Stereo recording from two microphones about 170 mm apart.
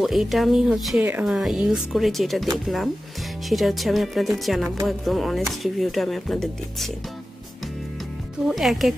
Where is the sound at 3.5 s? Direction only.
Centre (ahead or behind).